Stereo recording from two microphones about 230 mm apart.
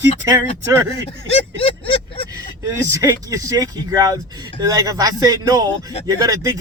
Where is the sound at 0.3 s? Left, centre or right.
Centre.